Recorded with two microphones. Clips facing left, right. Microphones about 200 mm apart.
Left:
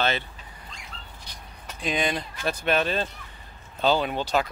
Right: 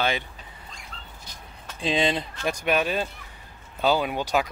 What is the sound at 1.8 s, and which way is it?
Speech, 25° right (ahead or behind).